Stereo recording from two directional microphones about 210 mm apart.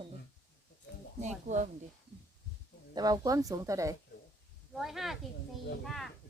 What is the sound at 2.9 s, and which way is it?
Speech, 20° right (ahead or behind).